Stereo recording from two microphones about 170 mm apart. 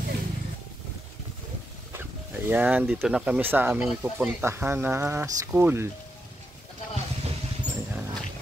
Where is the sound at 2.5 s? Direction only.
10° right (ahead or behind).